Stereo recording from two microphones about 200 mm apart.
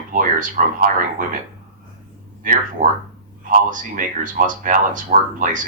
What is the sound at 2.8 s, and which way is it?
Speech, 40° right (ahead or behind).